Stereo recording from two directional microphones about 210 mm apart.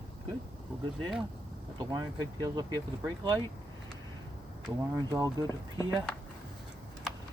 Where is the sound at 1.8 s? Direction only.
20° right (ahead or behind).